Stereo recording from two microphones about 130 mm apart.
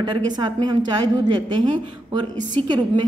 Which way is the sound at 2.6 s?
35° right (ahead or behind).